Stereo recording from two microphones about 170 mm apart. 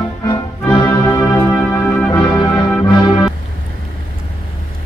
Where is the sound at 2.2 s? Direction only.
30° left (ahead or behind).